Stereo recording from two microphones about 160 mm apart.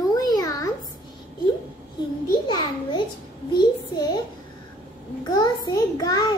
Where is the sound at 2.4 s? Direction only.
30° left (ahead or behind).